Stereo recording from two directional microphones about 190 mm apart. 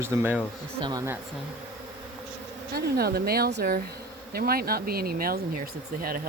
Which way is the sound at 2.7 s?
55° right (ahead or behind).